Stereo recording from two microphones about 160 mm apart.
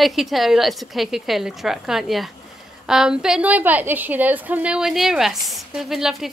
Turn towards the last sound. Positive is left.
turn(degrees=0)  # may be behind; listen again after turning